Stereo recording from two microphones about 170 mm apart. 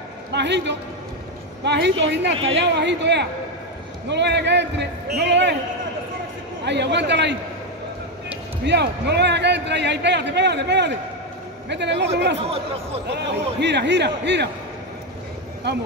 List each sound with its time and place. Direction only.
0.3 s a man's voice: 90° right
6.6 s a man's voice: 90° right
8.6 s a man's voice: 90° right
15.7 s speech: 90° right